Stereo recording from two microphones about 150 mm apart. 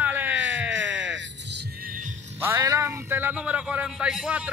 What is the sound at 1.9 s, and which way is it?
Music, 60° right (ahead or behind).